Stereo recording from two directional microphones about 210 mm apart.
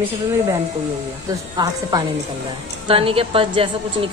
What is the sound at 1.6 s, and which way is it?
A woman's voice, 20° right (ahead or behind).